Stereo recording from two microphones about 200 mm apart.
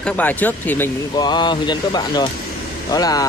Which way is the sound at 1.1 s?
20° left (ahead or behind).